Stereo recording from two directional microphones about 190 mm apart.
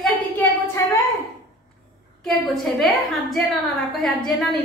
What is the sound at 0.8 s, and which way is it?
Speech, 15° left (ahead or behind).